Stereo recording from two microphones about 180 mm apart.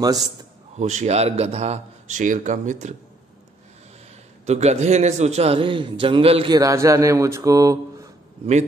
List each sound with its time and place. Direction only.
0.7 s a man's voice: 40° right (ahead or behind)
4.5 s a man's voice: 40° right (ahead or behind); by 8.1 s 20° right (ahead or behind)